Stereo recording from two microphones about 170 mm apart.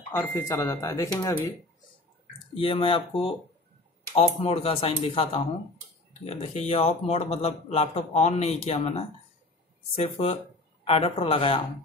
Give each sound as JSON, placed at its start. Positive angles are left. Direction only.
{"t": 0.1, "sound": "speech", "side_deg": 15}
{"t": 2.5, "sound": "speech", "side_deg": 30}